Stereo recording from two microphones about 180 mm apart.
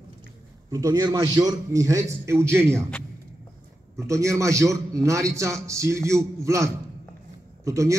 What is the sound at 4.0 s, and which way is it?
A man's voice, 15° right (ahead or behind).